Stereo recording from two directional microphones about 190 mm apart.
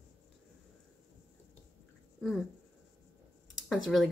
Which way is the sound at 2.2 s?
Centre (ahead or behind).